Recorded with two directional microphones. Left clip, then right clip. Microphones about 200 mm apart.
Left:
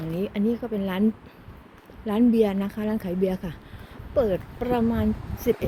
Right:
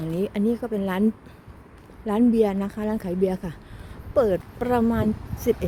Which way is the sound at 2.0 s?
15° right (ahead or behind).